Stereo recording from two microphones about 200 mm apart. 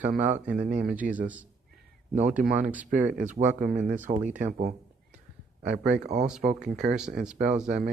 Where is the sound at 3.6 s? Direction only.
45° right (ahead or behind).